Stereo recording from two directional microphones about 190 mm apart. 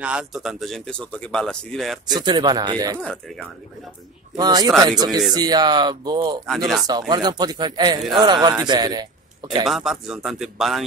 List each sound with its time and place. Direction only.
0.0 s speech: 5° right (ahead or behind)
2.1 s speech: 25° right (ahead or behind)
3.0 s speech: 5° left (ahead or behind)
4.4 s speech: 20° right (ahead or behind)
9.7 s speech: centre (ahead or behind)